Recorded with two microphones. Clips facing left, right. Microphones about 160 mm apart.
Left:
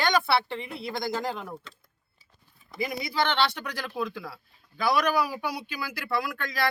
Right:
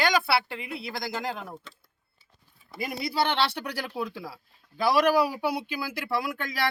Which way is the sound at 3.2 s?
10° right (ahead or behind).